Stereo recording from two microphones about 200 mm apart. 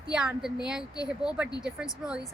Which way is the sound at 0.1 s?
5° right (ahead or behind).